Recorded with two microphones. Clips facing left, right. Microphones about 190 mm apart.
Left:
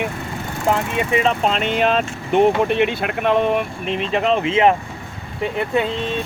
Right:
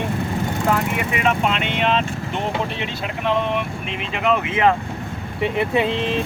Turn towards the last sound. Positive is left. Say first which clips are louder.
# even
turn(degrees=0)  # may be behind; listen again after turning